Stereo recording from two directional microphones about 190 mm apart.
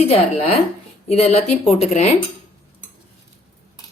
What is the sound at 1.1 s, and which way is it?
Speech, 35° left (ahead or behind).